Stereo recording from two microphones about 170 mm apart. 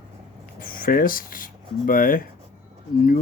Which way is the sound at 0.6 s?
55° left (ahead or behind).